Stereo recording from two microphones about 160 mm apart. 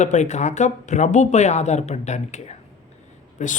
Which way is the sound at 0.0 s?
45° left (ahead or behind).